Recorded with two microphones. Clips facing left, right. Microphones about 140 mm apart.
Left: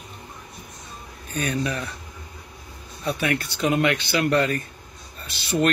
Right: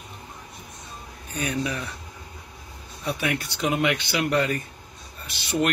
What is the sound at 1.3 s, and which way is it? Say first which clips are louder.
Speech: left 2 dB; 15° right (ahead or behind).